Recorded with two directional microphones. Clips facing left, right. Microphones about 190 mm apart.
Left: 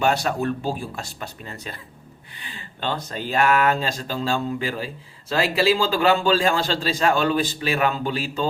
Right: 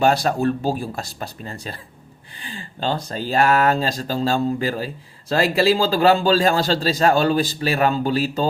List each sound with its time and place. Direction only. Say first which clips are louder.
0.0 s a man's voice: right 4 dB; 35° right (ahead or behind)
2.3 s a sound: right 6 dB; 30° right (ahead or behind)
3.1 s a man's voice: right 2 dB; 35° right (ahead or behind)